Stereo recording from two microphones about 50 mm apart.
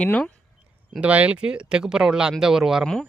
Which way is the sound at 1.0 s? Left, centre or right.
Right.